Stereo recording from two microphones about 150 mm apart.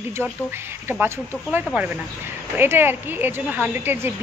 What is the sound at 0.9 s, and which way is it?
Speech, 15° right (ahead or behind).